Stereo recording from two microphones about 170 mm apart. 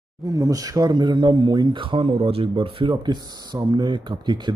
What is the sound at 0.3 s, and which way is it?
Speech, 20° right (ahead or behind).